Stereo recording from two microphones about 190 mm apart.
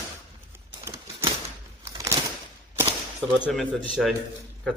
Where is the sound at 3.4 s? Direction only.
Centre (ahead or behind).